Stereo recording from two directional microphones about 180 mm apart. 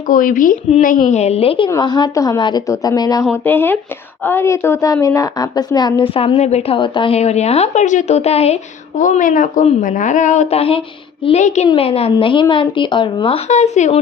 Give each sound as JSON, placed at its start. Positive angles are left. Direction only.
{"t": 0.1, "sound": "a woman's voice", "side_deg": 50}
{"t": 9.0, "sound": "a woman's voice", "side_deg": 45}